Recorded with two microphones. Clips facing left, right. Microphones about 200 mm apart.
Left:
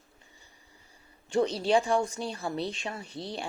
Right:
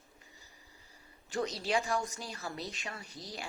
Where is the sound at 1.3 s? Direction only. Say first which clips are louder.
Left 8 dB; 30° left (ahead or behind).